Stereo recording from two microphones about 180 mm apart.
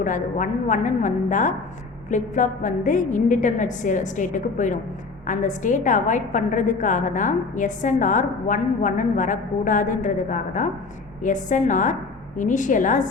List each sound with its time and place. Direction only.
0.0 s a woman's voice: 45° left (ahead or behind)